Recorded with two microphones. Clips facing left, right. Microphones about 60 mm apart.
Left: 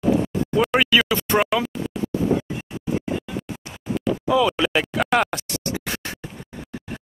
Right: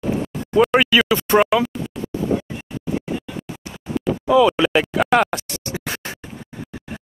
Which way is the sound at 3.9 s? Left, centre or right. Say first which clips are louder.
Right 4 dB; centre.